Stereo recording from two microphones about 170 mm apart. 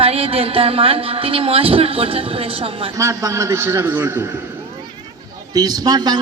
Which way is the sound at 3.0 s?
15° right (ahead or behind).